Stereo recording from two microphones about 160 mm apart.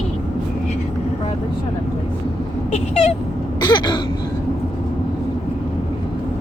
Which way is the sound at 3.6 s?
25° left (ahead or behind).